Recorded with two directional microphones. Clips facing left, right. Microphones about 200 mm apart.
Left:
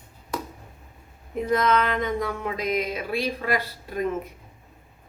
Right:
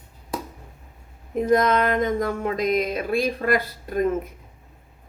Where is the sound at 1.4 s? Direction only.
45° right (ahead or behind).